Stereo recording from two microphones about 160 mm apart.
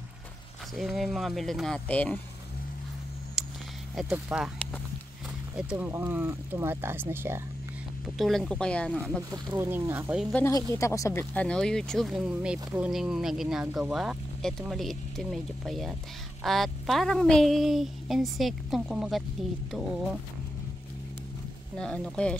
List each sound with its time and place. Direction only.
0.7 s speech: centre (ahead or behind)
4.3 s speech: 5° right (ahead or behind)
5.6 s speech: 10° right (ahead or behind)
8.2 s speech: centre (ahead or behind)
9.3 s speech: 20° right (ahead or behind)
10.3 s speech: 15° left (ahead or behind); by 19.2 s centre (ahead or behind)
21.7 s speech: 5° left (ahead or behind)